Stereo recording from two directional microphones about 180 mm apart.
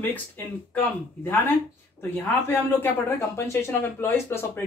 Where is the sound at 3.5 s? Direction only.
15° left (ahead or behind).